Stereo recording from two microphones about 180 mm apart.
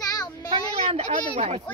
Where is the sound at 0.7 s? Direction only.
35° right (ahead or behind).